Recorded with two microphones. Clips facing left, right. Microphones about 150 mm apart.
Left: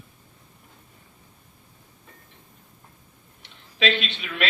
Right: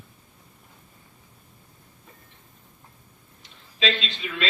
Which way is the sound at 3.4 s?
70° left (ahead or behind).